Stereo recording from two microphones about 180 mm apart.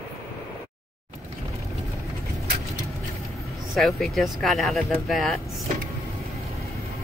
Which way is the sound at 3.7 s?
Centre (ahead or behind).